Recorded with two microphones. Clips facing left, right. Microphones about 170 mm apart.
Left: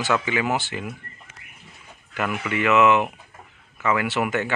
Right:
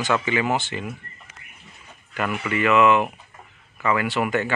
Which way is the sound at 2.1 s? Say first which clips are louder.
Right 1 dB; 10° left (ahead or behind).